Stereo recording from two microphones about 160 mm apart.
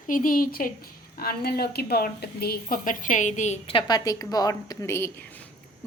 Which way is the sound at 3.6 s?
30° left (ahead or behind).